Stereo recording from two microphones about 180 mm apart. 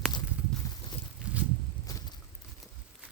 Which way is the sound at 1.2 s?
5° right (ahead or behind).